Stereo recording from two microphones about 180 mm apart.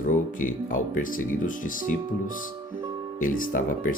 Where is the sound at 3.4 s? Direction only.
50° left (ahead or behind).